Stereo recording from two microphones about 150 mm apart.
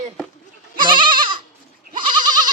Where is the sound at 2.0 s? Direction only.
30° right (ahead or behind).